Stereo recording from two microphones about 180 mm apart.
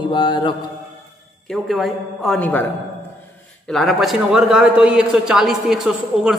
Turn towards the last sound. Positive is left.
turn(degrees=0)  # may be behind; listen again after turning